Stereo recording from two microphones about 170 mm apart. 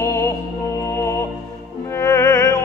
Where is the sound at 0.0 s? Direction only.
15° left (ahead or behind).